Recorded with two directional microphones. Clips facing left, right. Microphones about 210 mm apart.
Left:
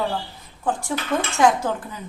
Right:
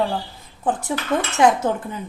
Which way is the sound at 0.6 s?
20° right (ahead or behind).